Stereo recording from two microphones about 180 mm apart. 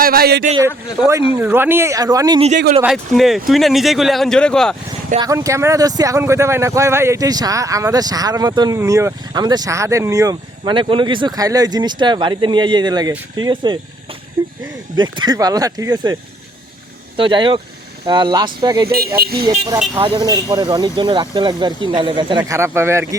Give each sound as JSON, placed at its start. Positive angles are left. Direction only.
{"t": 0.0, "sound": "speech", "side_deg": -55}
{"t": 1.0, "sound": "speech", "side_deg": -5}
{"t": 2.8, "sound": "a man's voice", "side_deg": 0}
{"t": 5.2, "sound": "speech", "side_deg": -20}
{"t": 10.6, "sound": "speech", "side_deg": -30}
{"t": 14.9, "sound": "speech", "side_deg": -25}
{"t": 17.2, "sound": "speech", "side_deg": -25}
{"t": 18.9, "sound": "speech", "side_deg": -60}
{"t": 19.5, "sound": "speech", "side_deg": -25}